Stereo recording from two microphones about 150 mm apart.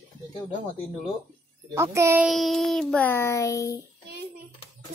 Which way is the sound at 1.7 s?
20° right (ahead or behind).